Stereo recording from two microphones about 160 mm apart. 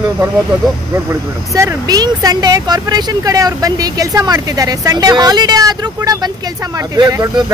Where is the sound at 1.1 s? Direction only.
20° right (ahead or behind).